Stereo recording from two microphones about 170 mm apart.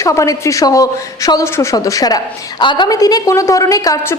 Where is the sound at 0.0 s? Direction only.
20° left (ahead or behind).